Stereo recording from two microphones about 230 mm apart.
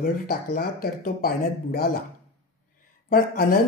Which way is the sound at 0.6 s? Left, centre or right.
Left.